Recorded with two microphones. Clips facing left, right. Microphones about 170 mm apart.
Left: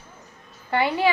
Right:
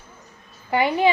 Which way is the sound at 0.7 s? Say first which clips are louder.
Right 2 dB; 15° right (ahead or behind).